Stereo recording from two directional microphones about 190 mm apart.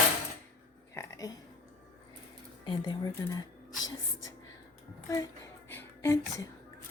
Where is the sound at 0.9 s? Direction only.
15° left (ahead or behind).